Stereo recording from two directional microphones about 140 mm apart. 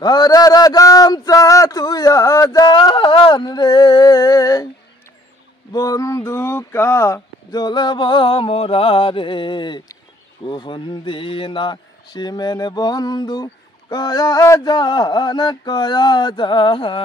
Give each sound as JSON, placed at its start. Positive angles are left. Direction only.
{"t": 0.0, "sound": "a sound", "side_deg": 30}
{"t": 2.7, "sound": "speech", "side_deg": 35}
{"t": 5.7, "sound": "speech", "side_deg": 25}